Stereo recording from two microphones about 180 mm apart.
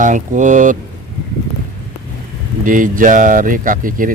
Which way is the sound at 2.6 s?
45° right (ahead or behind).